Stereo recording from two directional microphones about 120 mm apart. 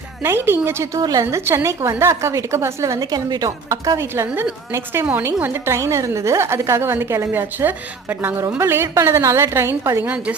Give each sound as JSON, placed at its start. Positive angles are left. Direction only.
{"t": 0.2, "sound": "a woman's voice", "side_deg": -20}